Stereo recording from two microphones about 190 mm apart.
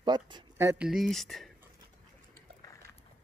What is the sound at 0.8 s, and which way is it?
Speech, centre (ahead or behind).